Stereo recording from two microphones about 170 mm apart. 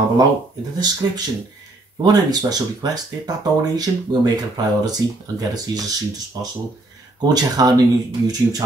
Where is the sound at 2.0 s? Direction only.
25° right (ahead or behind).